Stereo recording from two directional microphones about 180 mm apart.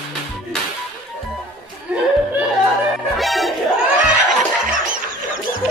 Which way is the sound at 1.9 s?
5° right (ahead or behind).